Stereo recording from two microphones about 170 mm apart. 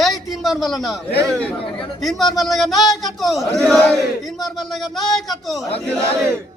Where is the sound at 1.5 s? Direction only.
30° left (ahead or behind).